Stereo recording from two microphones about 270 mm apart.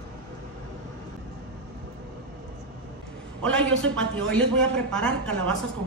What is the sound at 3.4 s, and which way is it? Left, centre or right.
Speech, centre.